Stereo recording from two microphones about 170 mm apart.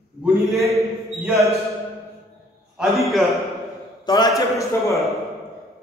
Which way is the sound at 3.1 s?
Centre (ahead or behind).